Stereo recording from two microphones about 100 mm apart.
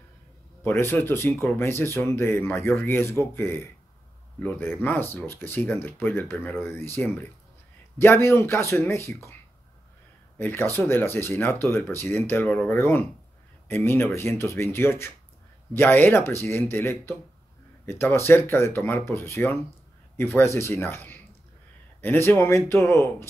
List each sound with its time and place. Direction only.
0.7 s speech: 20° left (ahead or behind)
10.3 s speech: 20° left (ahead or behind)